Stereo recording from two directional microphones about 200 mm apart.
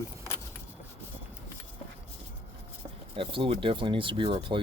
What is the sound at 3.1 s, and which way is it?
Speech, 25° right (ahead or behind).